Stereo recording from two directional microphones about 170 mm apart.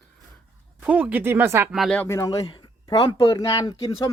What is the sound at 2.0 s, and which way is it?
Speech, 20° left (ahead or behind).